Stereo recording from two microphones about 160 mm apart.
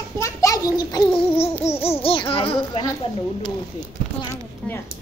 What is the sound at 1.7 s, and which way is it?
Speech, 40° left (ahead or behind).